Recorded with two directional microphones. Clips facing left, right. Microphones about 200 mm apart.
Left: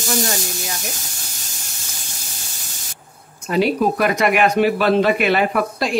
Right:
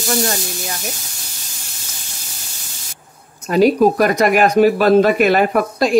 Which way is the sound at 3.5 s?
40° right (ahead or behind).